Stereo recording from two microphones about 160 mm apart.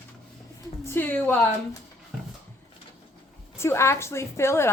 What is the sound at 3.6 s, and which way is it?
A woman's voice, 15° left (ahead or behind).